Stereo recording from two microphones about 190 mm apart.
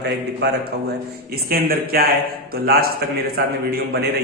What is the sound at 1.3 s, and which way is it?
A man's voice, 50° right (ahead or behind).